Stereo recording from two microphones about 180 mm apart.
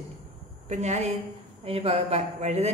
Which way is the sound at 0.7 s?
40° right (ahead or behind).